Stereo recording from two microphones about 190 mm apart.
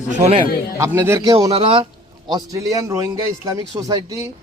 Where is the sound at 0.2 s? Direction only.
30° right (ahead or behind).